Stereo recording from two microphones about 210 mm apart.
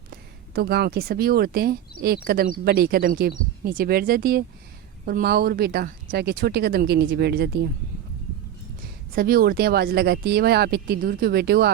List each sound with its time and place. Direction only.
0.1 s speech: 50° right (ahead or behind)
9.1 s speech: 45° right (ahead or behind)